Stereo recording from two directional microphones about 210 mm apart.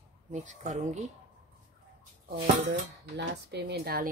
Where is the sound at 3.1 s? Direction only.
55° right (ahead or behind).